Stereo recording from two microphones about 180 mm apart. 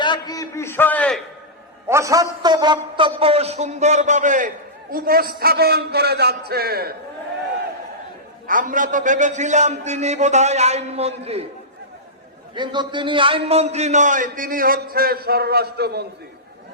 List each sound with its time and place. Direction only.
0.0 s a man's voice: 25° left (ahead or behind); by 1.2 s 5° left (ahead or behind)
1.9 s a man's voice: 15° right (ahead or behind); by 6.9 s 60° right (ahead or behind)
8.4 s a man's voice: 50° right (ahead or behind)
12.5 s a man's voice: 25° right (ahead or behind); by 16.0 s 65° right (ahead or behind)